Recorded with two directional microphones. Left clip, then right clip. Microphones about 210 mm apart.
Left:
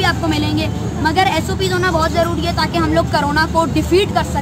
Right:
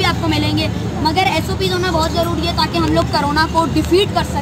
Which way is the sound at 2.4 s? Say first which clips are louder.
Even; 5° left (ahead or behind).